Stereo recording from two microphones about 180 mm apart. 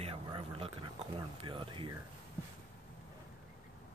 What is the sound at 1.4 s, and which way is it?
Speech, 30° right (ahead or behind).